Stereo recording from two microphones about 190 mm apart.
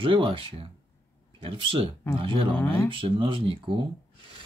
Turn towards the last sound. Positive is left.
turn(degrees=-25)  # may be behind; listen again after turning